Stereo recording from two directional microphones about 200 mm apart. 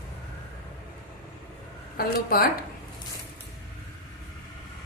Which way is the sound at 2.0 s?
50° left (ahead or behind).